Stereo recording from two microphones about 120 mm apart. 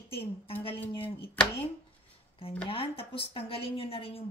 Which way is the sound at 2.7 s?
50° left (ahead or behind).